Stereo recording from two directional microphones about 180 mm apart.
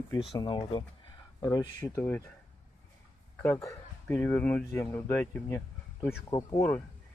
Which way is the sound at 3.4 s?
10° left (ahead or behind).